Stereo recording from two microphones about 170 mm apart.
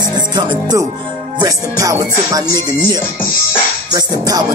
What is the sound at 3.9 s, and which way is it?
Music, 20° right (ahead or behind).